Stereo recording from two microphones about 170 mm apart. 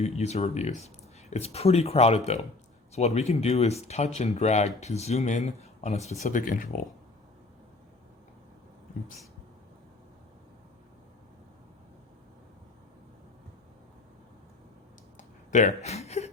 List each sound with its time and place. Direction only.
0.0 s speech: 40° left (ahead or behind)
15.5 s speech: 45° left (ahead or behind)